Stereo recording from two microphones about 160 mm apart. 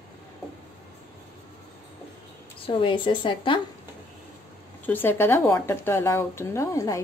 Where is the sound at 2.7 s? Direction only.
30° left (ahead or behind).